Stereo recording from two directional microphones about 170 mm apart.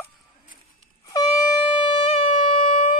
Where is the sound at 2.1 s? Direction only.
45° left (ahead or behind).